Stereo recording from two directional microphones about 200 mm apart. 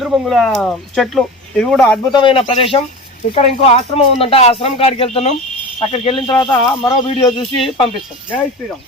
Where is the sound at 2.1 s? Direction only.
25° left (ahead or behind).